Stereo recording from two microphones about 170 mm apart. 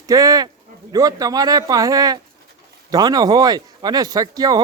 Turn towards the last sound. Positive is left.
turn(degrees=-20)  # may be behind; listen again after turning